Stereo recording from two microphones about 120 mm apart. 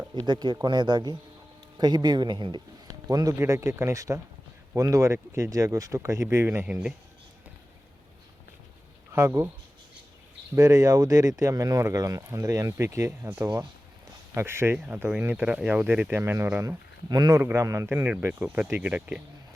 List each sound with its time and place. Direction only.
0.3 s speech: 40° right (ahead or behind); by 6.9 s 10° right (ahead or behind)
9.1 s speech: 25° right (ahead or behind)
10.5 s speech: 25° right (ahead or behind)
14.3 s speech: 20° right (ahead or behind)
17.1 s speech: 35° right (ahead or behind)
17.9 s speech: 15° right (ahead or behind)